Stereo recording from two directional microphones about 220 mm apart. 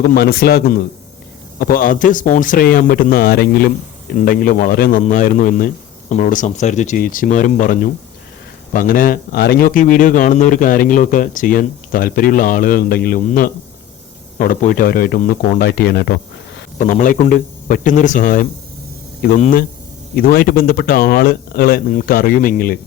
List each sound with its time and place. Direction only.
0.0 s a man's voice: 45° left (ahead or behind)
16.7 s a man's voice: 35° left (ahead or behind)